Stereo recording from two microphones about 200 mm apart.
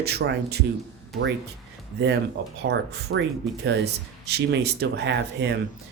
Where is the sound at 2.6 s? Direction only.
55° right (ahead or behind).